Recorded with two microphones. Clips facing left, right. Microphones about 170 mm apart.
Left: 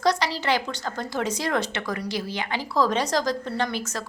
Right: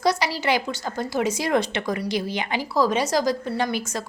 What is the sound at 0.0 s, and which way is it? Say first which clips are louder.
A woman's voice: right 1 dB; 10° right (ahead or behind).